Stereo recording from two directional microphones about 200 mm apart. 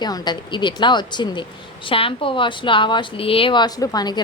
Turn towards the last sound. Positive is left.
turn(degrees=20)  # may be behind; listen again after turning